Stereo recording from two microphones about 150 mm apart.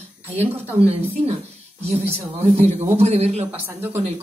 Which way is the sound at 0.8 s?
45° right (ahead or behind).